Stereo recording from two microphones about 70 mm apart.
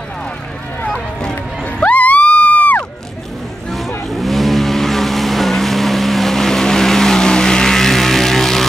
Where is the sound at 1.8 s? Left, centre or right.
Left.